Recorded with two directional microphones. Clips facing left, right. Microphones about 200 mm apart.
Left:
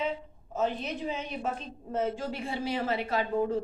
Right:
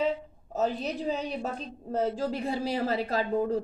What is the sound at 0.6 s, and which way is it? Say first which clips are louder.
A woman's voice: right 2 dB; 35° right (ahead or behind).